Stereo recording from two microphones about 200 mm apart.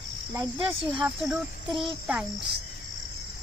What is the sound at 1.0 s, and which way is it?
Speech, 5° right (ahead or behind).